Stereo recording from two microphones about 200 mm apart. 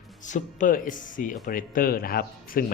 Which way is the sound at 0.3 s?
40° left (ahead or behind).